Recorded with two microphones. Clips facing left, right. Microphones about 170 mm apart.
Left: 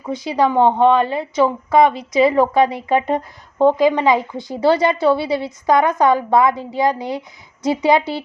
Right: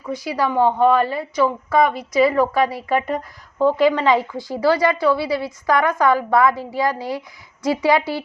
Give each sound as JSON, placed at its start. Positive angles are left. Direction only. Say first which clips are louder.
{"t": 0.0, "sound": "a woman's voice", "louder": "left 4 dB", "side_deg": 20}